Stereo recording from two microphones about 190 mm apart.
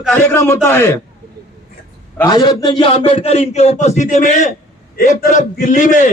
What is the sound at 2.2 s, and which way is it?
A man's voice, 25° left (ahead or behind).